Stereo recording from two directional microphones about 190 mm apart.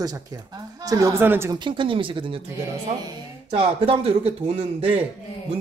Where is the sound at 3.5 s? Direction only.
30° right (ahead or behind).